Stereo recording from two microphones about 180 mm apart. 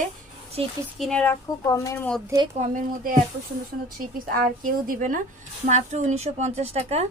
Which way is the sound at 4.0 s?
50° right (ahead or behind).